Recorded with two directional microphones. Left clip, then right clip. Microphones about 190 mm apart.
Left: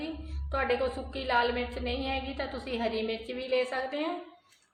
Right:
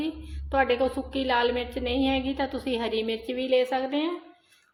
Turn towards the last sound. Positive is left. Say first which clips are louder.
# right 5 dB
turn(degrees=-45)  # may be behind; listen again after turning